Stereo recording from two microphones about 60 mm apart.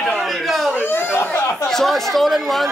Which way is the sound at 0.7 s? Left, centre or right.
Left.